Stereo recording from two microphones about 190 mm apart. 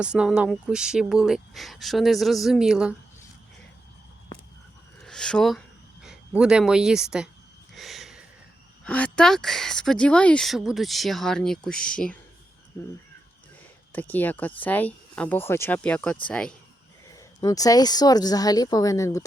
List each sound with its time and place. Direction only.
0.0 s speech: 5° right (ahead or behind)
5.0 s a sound: 5° left (ahead or behind)
8.8 s speech: 5° left (ahead or behind)
13.9 s speech: 10° left (ahead or behind)
17.2 s speech: 20° left (ahead or behind)